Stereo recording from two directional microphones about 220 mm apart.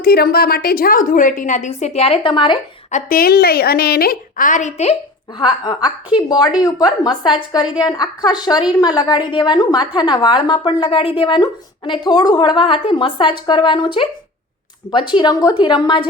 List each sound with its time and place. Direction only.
0.0 s a woman's voice: 45° left (ahead or behind); by 2.6 s 20° left (ahead or behind)
2.9 s a woman's voice: 40° left (ahead or behind)
5.4 s a woman's voice: 20° left (ahead or behind)